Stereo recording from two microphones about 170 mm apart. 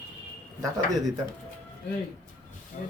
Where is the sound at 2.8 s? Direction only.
50° left (ahead or behind).